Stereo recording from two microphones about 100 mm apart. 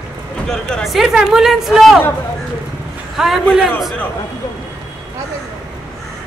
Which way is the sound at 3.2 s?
5° right (ahead or behind).